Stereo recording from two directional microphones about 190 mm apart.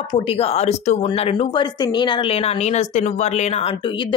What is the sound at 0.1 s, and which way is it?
Speech, 30° left (ahead or behind).